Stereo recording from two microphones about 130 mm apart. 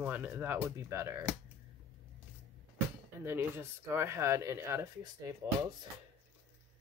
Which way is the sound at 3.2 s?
15° right (ahead or behind).